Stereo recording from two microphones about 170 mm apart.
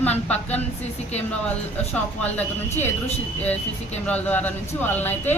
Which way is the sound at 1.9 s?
10° left (ahead or behind).